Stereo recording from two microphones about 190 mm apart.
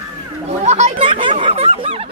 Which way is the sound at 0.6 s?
35° right (ahead or behind).